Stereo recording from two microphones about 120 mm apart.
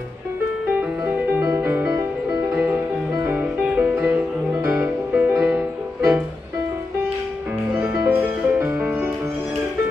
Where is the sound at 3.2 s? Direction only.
15° right (ahead or behind).